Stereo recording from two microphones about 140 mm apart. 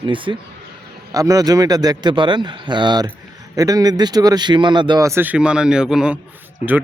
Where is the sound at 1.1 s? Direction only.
25° right (ahead or behind).